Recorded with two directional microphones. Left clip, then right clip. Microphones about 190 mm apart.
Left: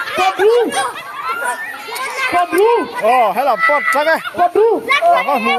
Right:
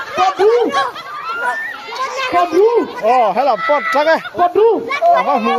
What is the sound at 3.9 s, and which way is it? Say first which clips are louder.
Speech: right 1 dB; 10° left (ahead or behind).